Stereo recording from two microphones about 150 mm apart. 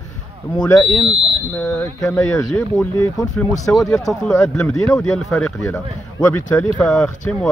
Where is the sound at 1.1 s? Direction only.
40° right (ahead or behind).